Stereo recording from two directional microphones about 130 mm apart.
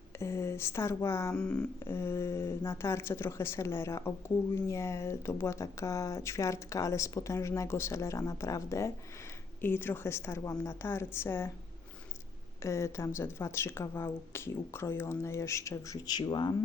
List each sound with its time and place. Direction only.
0.2 s speech: 20° left (ahead or behind)
12.6 s speech: 20° left (ahead or behind)